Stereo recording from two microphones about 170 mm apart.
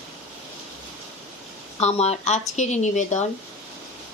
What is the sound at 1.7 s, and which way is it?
Speech, 40° left (ahead or behind).